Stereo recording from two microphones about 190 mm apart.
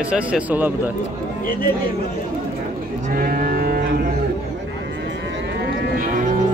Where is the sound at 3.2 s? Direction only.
50° right (ahead or behind).